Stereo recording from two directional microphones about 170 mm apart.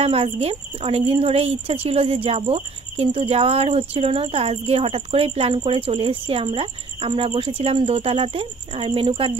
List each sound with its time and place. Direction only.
0.0 s speech: 35° right (ahead or behind)